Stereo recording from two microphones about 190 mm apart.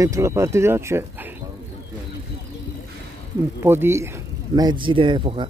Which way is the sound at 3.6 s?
15° right (ahead or behind).